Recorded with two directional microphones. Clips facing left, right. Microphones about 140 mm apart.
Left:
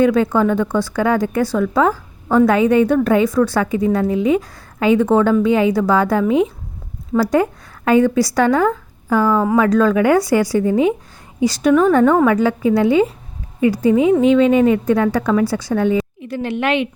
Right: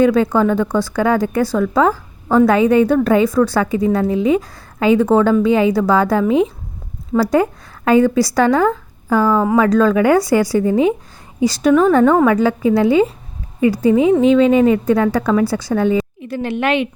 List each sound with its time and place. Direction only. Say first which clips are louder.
0.0 s a woman's voice: right 1 dB; 35° right (ahead or behind)